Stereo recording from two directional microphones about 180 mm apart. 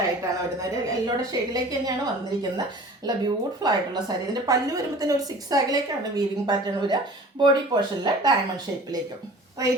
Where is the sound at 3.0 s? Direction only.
25° right (ahead or behind).